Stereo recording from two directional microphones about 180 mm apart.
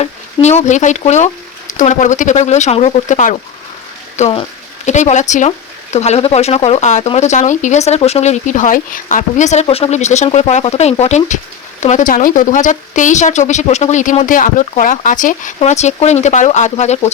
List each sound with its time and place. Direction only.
0.0 s speech: 35° left (ahead or behind)
4.2 s speech: 30° left (ahead or behind)